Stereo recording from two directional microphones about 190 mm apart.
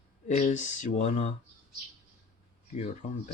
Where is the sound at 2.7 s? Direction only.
35° left (ahead or behind).